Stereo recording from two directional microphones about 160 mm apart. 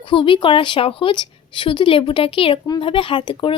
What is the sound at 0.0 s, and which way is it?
A woman's voice, 30° left (ahead or behind).